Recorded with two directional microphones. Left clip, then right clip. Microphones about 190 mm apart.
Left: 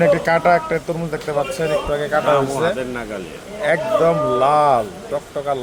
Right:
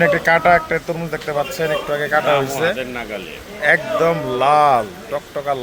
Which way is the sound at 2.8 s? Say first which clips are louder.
Even; 45° left (ahead or behind).